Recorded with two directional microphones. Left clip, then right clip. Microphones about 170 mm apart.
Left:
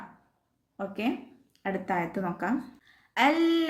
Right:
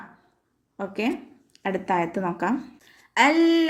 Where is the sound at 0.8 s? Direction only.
15° right (ahead or behind).